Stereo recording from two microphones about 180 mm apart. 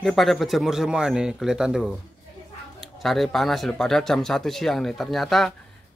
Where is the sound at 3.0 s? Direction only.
Centre (ahead or behind).